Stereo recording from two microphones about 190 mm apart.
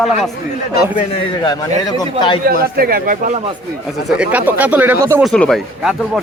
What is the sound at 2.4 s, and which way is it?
Speech, 50° right (ahead or behind).